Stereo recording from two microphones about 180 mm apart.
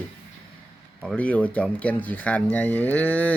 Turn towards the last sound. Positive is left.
turn(degrees=10)  # may be behind; listen again after turning